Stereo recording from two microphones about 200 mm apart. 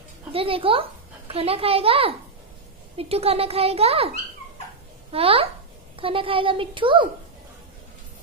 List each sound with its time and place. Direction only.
0.3 s a woman's voice: 25° right (ahead or behind)
5.1 s speech: 30° right (ahead or behind)